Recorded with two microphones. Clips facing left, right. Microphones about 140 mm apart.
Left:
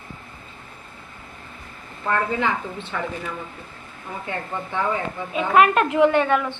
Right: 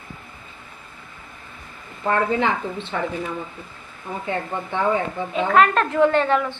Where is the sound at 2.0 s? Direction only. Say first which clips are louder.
Right 2 dB; 25° right (ahead or behind).